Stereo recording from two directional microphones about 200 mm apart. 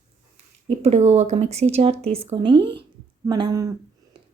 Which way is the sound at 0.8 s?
35° right (ahead or behind).